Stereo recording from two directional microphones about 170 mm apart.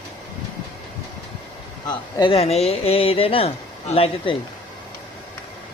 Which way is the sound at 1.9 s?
25° left (ahead or behind).